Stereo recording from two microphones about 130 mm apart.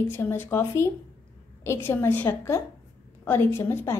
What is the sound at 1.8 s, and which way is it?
A woman's voice, 15° left (ahead or behind).